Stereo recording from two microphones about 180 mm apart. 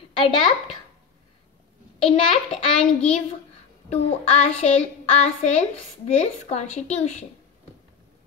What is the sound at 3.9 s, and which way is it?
Child singing, 35° left (ahead or behind).